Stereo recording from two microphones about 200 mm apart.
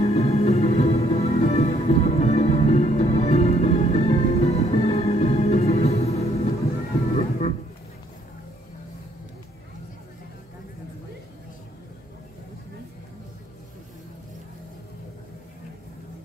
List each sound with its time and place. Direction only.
0.0 s music: 30° left (ahead or behind)